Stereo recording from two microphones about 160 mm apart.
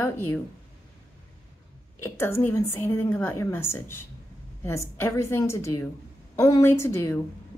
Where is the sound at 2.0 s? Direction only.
15° left (ahead or behind).